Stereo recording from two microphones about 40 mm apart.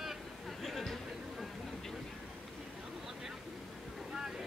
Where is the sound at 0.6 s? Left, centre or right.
Centre.